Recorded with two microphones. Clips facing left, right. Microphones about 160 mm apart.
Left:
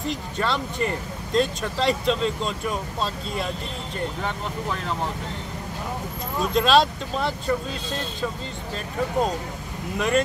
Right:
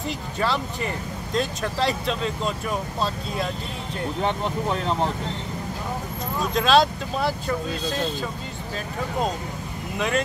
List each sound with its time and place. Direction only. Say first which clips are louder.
0.0 s speech: even; 5° right (ahead or behind)
4.2 s speech: right 5 dB; 30° right (ahead or behind)
6.5 s speech: even; centre (ahead or behind)
9.9 s speech: left 3 dB; centre (ahead or behind)